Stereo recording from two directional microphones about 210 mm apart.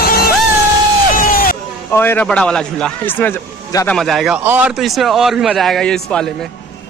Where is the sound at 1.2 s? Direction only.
40° left (ahead or behind).